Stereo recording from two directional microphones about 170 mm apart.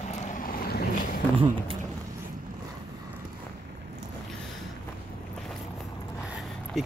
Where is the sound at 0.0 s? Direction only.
45° left (ahead or behind); by 1.2 s 65° left (ahead or behind).